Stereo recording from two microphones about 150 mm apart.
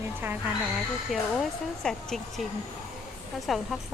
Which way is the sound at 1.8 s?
Centre (ahead or behind).